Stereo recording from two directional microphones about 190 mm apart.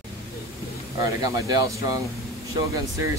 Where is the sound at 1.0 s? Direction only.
15° right (ahead or behind).